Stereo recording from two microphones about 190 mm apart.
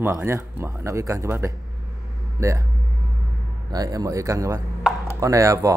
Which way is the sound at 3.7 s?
20° right (ahead or behind).